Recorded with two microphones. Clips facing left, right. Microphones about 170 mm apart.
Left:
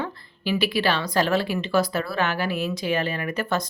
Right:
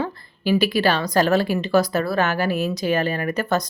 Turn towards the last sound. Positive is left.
turn(degrees=-40)  # may be behind; listen again after turning